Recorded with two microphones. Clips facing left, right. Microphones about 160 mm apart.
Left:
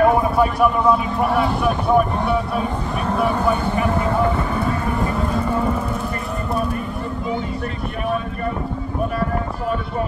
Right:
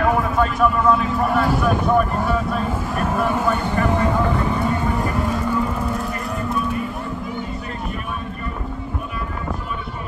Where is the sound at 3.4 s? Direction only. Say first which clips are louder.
Left 1 dB; 10° left (ahead or behind).